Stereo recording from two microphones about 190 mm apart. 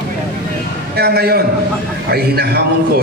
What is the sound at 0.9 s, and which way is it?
A man's voice, 55° right (ahead or behind).